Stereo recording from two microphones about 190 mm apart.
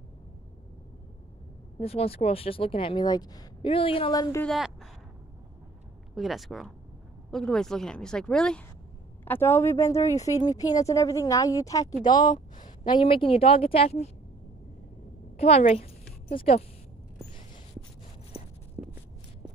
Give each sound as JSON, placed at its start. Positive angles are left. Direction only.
{"t": 1.8, "sound": "speech", "side_deg": 30}
{"t": 4.5, "sound": "a woman's voice", "side_deg": 0}
{"t": 6.1, "sound": "a woman's voice", "side_deg": 0}
{"t": 15.3, "sound": "a woman's voice", "side_deg": 30}
{"t": 18.8, "sound": "a sound", "side_deg": -30}